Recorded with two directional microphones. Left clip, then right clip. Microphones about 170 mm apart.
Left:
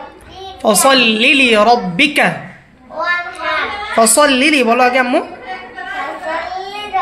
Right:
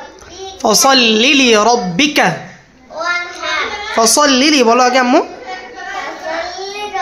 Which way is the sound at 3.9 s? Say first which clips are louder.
Even; 30° right (ahead or behind).